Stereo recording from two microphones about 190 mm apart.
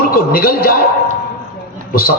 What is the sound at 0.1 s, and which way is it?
Speech, 50° left (ahead or behind).